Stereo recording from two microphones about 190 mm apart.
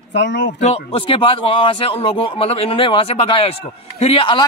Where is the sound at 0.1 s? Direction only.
65° left (ahead or behind).